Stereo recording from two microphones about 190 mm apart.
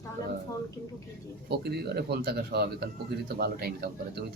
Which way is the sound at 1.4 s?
55° right (ahead or behind).